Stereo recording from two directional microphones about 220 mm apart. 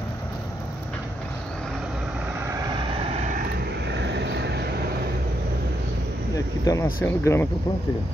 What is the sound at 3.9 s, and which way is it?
Vehicle, 50° right (ahead or behind).